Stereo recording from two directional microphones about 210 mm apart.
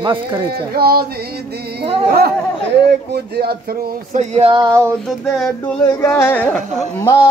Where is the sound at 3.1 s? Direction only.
50° right (ahead or behind).